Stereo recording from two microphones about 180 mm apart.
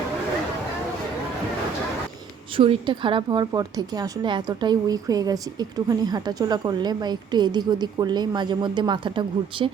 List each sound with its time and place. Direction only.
2.6 s a woman's voice: 30° right (ahead or behind)